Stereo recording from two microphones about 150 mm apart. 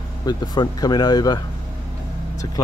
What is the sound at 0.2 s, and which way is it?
Speech, 25° left (ahead or behind).